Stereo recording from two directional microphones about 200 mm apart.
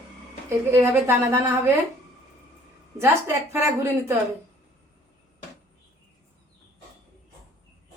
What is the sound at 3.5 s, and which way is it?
Speech, 10° right (ahead or behind).